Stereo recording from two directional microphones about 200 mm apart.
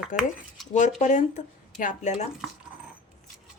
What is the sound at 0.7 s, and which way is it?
Speech, 35° left (ahead or behind).